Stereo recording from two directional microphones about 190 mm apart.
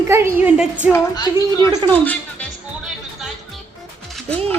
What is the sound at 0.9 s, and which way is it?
A woman's voice, 20° left (ahead or behind).